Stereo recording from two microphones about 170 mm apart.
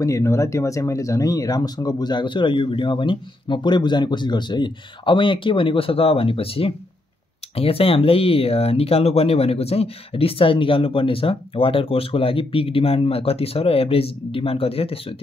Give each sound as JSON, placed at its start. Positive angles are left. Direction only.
{"t": 0.0, "sound": "speech", "side_deg": 15}